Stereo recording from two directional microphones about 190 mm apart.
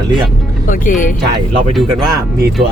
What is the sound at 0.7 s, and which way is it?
Speech, 45° left (ahead or behind).